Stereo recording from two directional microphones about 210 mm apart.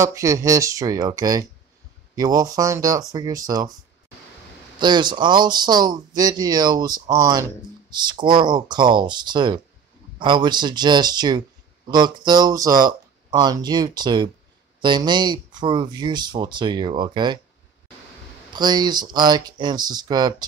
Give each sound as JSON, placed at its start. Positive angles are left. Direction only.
{"t": 0.0, "sound": "speech", "side_deg": -15}
{"t": 4.7, "sound": "speech", "side_deg": -20}
{"t": 18.5, "sound": "speech", "side_deg": -20}